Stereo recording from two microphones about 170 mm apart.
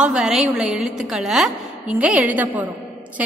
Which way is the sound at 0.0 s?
5° right (ahead or behind).